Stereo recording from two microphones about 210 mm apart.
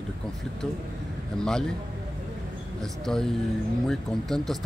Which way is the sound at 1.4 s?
5° left (ahead or behind).